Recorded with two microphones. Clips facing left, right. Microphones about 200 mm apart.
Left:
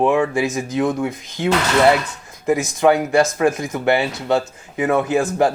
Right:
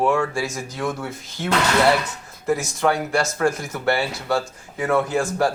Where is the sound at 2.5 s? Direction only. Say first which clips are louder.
Left 5 dB; 20° left (ahead or behind).